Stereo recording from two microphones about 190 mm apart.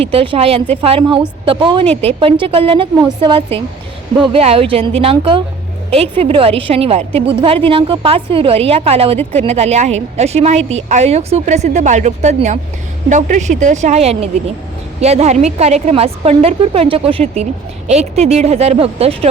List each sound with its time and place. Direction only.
0.0 s a woman's voice: 30° right (ahead or behind)